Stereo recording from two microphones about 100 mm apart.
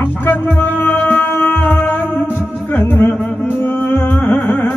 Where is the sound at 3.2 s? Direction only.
10° left (ahead or behind).